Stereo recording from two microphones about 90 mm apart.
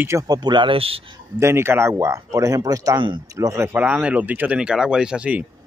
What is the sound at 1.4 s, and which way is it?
Speech, 30° right (ahead or behind).